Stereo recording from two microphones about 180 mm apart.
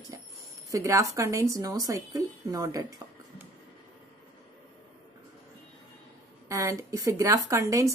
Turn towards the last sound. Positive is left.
turn(degrees=-15)  # may be behind; listen again after turning